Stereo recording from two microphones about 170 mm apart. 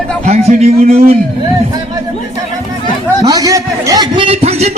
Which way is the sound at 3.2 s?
20° right (ahead or behind).